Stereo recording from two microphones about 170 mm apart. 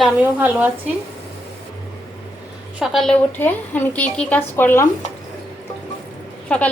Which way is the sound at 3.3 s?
10° left (ahead or behind).